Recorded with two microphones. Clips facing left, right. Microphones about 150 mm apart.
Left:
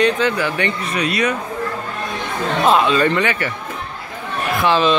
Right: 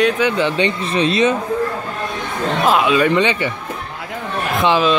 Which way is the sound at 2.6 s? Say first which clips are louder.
Even; 5° right (ahead or behind).